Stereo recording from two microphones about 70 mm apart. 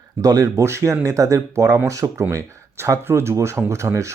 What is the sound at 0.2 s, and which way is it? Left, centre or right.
Speech, right.